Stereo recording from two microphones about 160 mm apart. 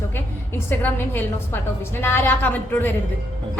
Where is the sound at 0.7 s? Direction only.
15° left (ahead or behind).